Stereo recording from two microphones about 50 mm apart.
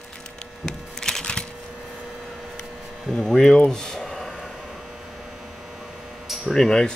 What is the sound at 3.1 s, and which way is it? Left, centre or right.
Speech, centre.